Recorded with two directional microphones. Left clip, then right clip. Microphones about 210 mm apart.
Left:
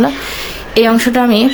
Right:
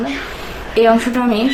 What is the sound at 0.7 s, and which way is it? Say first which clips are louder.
Speech: left 2 dB; 40° left (ahead or behind).